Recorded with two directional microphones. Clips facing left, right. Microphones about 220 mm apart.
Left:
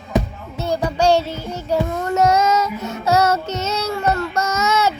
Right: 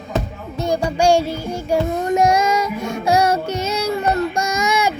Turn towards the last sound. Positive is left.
turn(degrees=-10)  # may be behind; listen again after turning